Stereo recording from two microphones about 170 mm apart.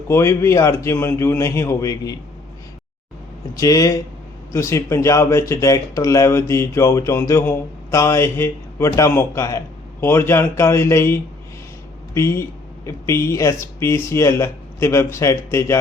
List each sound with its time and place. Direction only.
0.1 s speech: 15° left (ahead or behind)
3.5 s speech: 20° left (ahead or behind)